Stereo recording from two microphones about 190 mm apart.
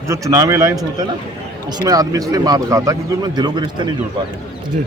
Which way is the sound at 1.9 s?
20° right (ahead or behind).